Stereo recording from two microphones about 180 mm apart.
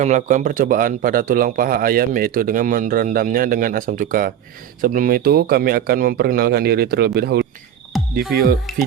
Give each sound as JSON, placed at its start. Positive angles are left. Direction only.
{"t": 0.0, "sound": "a man's voice", "side_deg": -40}
{"t": 8.7, "sound": "speech", "side_deg": 0}